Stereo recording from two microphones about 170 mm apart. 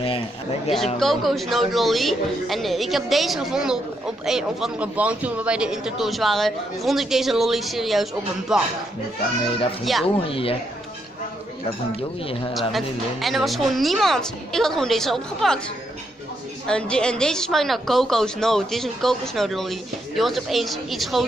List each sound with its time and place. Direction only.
0.0 s speech: 30° left (ahead or behind)
0.9 s speech: centre (ahead or behind)
10.0 s speech: 35° left (ahead or behind)
12.5 s speech: centre (ahead or behind)
16.6 s speech: 5° left (ahead or behind)